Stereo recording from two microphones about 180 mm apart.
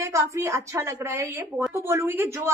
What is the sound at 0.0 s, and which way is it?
A woman's voice, 15° right (ahead or behind).